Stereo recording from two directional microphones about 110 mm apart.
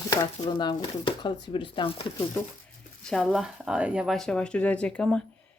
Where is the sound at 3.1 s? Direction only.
Centre (ahead or behind).